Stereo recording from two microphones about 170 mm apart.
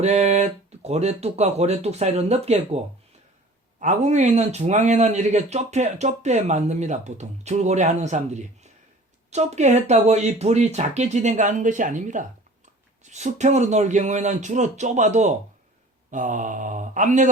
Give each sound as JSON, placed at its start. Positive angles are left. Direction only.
{"t": 0.0, "sound": "a man's voice", "side_deg": -40}